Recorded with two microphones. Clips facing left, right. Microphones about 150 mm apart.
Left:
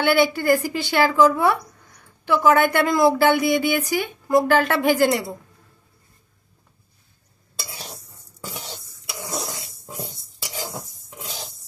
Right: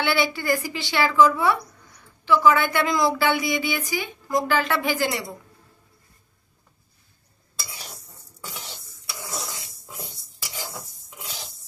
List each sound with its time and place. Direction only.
0.0 s a woman's voice: 55° left (ahead or behind)
9.8 s cutlery: 30° left (ahead or behind)